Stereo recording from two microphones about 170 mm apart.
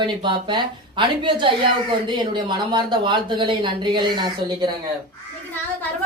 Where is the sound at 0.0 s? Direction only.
30° right (ahead or behind).